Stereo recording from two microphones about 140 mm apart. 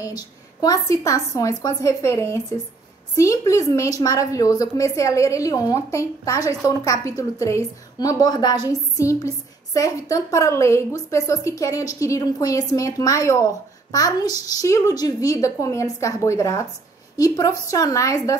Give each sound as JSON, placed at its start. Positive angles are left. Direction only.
{"t": 0.0, "sound": "a woman's voice", "side_deg": 25}